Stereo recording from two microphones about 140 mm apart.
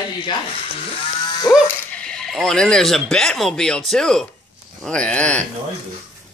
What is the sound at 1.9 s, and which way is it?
Speech, 5° left (ahead or behind).